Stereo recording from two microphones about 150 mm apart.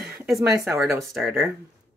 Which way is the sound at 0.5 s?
20° right (ahead or behind).